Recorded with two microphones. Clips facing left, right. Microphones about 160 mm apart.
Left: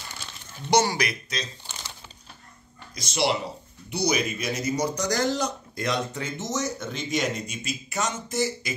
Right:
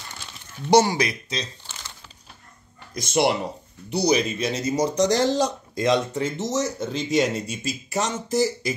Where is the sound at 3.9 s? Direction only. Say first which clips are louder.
Right 5 dB; 35° right (ahead or behind).